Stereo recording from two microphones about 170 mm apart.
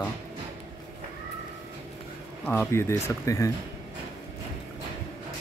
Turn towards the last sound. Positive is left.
turn(degrees=20)  # may be behind; listen again after turning